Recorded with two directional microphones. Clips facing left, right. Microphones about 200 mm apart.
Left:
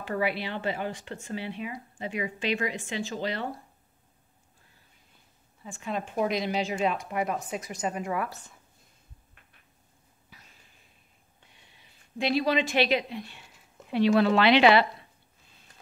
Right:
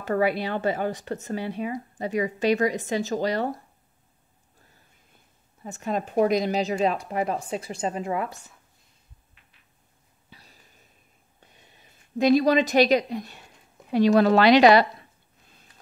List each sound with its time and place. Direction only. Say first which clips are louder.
0.0 s speech: right 6 dB; 45° right (ahead or behind)
5.6 s speech: right 5 dB; 45° right (ahead or behind); by 8.4 s 25° right (ahead or behind)
10.3 s a sound: right 4 dB; 35° right (ahead or behind)
11.4 s a woman's voice: right 5 dB; 45° right (ahead or behind)